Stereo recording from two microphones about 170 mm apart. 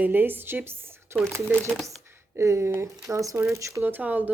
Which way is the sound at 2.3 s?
15° right (ahead or behind).